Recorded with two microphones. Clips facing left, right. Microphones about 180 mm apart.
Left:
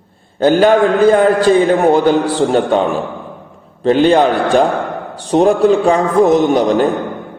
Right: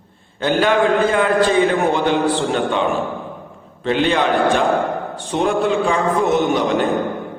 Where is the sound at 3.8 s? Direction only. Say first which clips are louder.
Left 7 dB; 40° left (ahead or behind).